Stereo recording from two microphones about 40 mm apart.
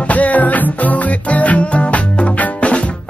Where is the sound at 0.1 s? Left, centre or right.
Left.